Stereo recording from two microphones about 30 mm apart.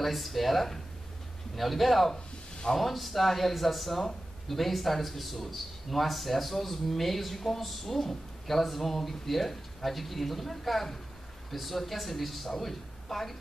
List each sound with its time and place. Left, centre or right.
0.0 s a man's voice: centre
2.1 s a sound: left
2.7 s a man's voice: centre